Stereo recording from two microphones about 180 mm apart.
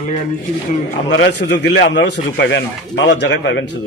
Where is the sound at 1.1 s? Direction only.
75° left (ahead or behind).